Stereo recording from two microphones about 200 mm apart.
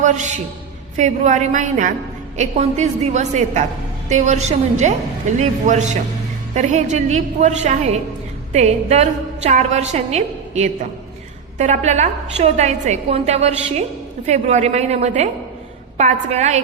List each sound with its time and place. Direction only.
0.0 s a man's voice: 35° right (ahead or behind)